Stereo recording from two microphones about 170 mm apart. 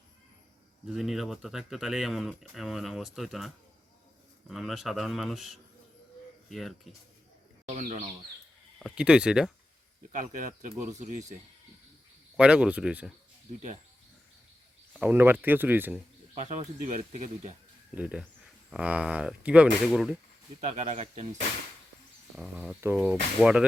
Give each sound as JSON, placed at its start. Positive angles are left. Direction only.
{"t": 0.9, "sound": "speech", "side_deg": 0}
{"t": 7.7, "sound": "speech", "side_deg": -45}
{"t": 8.8, "sound": "speech", "side_deg": -5}
{"t": 10.1, "sound": "speech", "side_deg": -50}
{"t": 12.4, "sound": "speech", "side_deg": -5}
{"t": 15.0, "sound": "speech", "side_deg": -10}
{"t": 16.3, "sound": "speech", "side_deg": -45}
{"t": 17.9, "sound": "speech", "side_deg": -5}
{"t": 20.7, "sound": "speech", "side_deg": -40}
{"t": 22.4, "sound": "speech", "side_deg": -5}